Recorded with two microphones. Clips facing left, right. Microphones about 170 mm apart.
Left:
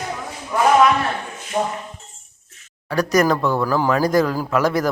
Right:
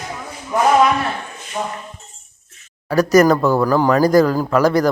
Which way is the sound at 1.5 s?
25° left (ahead or behind).